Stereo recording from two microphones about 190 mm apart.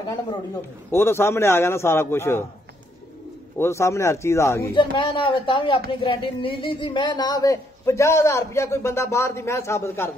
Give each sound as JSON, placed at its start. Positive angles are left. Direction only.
{"t": 0.9, "sound": "speech", "side_deg": 15}
{"t": 3.5, "sound": "speech", "side_deg": 15}
{"t": 4.7, "sound": "speech", "side_deg": 25}